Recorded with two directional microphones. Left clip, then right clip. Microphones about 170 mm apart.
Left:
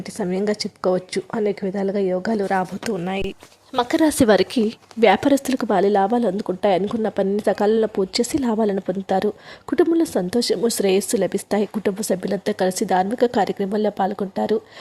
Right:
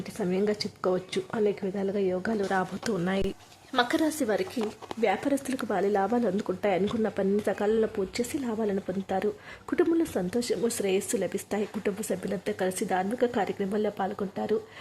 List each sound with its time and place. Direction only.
0.2 s a woman's voice: 25° left (ahead or behind)
3.8 s speech: 40° left (ahead or behind)